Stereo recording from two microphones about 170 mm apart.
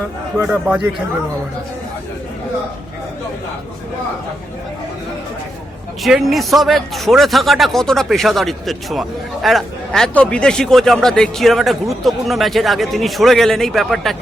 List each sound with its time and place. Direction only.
0.3 s a man's voice: 10° right (ahead or behind)
6.0 s a man's voice: centre (ahead or behind)